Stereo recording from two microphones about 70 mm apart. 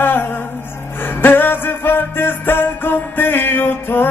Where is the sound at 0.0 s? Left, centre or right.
Left.